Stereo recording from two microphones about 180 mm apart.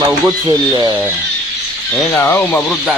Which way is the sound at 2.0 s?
10° left (ahead or behind).